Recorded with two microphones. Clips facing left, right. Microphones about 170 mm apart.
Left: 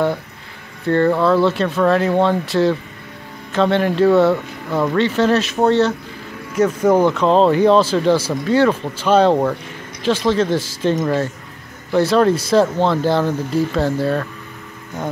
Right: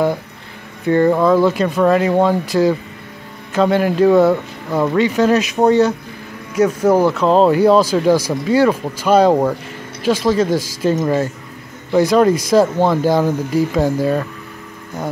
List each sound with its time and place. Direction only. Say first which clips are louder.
0.8 s speech: right 2 dB; 10° right (ahead or behind)